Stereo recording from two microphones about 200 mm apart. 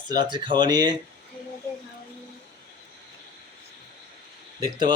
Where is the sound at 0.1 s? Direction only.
20° right (ahead or behind).